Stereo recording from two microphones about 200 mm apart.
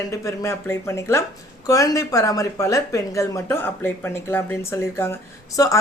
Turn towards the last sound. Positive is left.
turn(degrees=15)  # may be behind; listen again after turning